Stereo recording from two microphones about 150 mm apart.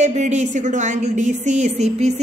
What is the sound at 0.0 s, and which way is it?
A woman's voice, 50° right (ahead or behind).